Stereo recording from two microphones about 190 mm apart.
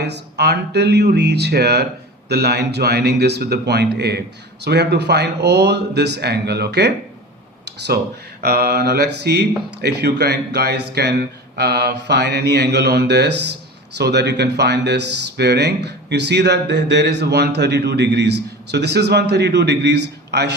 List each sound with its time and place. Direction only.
0.0 s speech: 60° right (ahead or behind)
7.6 s a sound: 60° right (ahead or behind)
8.4 s speech: 55° right (ahead or behind)